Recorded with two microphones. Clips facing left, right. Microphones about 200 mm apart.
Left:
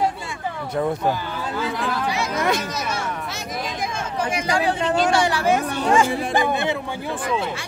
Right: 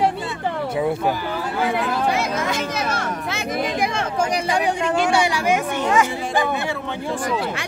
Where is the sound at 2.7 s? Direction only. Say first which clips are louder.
Right 2 dB; 55° right (ahead or behind).